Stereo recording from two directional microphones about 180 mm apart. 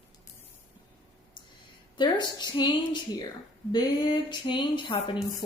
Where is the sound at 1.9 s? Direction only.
25° left (ahead or behind).